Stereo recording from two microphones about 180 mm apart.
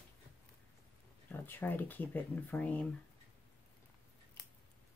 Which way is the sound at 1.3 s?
10° left (ahead or behind).